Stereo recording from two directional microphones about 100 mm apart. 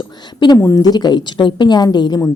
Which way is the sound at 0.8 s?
45° left (ahead or behind).